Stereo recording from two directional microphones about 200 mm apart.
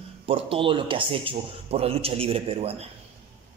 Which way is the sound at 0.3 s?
25° right (ahead or behind).